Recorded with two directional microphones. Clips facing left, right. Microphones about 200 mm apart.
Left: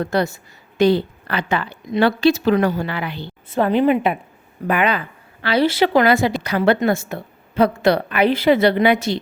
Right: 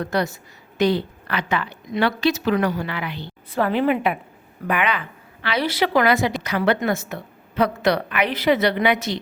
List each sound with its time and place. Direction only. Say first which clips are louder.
0.0 s a woman's voice: left 3 dB; 25° left (ahead or behind)
4.6 s a woman's voice: left 4 dB; 35° left (ahead or behind)